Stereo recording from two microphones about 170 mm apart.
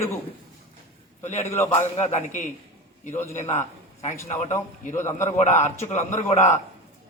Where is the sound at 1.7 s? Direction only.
40° left (ahead or behind).